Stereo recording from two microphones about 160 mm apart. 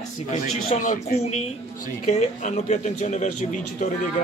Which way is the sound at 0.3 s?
50° left (ahead or behind).